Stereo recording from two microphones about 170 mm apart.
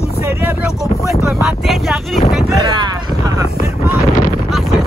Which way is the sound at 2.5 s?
25° right (ahead or behind).